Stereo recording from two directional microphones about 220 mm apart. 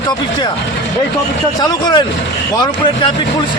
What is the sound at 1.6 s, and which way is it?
Speech, 20° left (ahead or behind).